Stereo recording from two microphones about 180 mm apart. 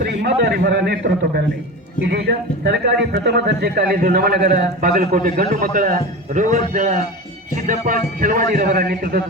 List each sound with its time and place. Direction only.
0.0 s a man's voice: 60° right (ahead or behind)